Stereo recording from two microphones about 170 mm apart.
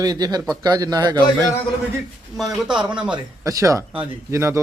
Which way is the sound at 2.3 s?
Centre (ahead or behind).